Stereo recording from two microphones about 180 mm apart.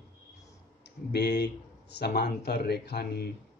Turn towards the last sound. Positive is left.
turn(degrees=60)  # may be behind; listen again after turning